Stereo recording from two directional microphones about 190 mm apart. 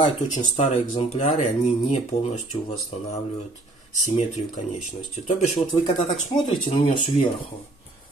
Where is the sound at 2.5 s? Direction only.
25° left (ahead or behind).